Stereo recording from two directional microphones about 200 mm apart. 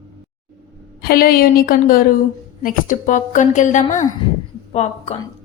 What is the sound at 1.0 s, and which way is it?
A woman's voice, 50° left (ahead or behind).